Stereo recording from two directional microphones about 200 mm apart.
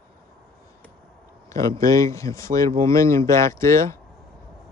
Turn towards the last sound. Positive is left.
turn(degrees=15)  # may be behind; listen again after turning